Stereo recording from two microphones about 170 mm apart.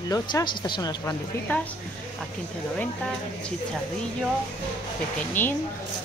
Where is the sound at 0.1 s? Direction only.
25° left (ahead or behind).